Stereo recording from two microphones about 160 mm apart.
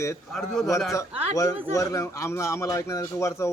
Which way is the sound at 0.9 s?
20° left (ahead or behind).